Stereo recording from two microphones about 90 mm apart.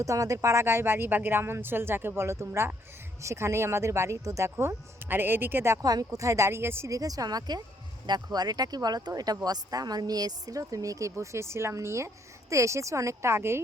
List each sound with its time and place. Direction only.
0.0 s speech: 35° right (ahead or behind)
4.5 s speech: 25° right (ahead or behind)
5.8 s speech: 45° right (ahead or behind); by 13.6 s 30° right (ahead or behind)